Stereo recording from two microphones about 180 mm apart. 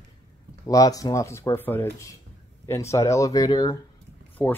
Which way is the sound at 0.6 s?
20° left (ahead or behind).